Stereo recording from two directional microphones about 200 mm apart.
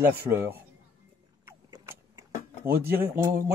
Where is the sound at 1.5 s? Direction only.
15° right (ahead or behind).